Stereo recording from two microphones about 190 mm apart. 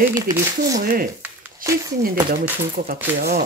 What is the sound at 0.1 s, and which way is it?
Speech, 15° right (ahead or behind).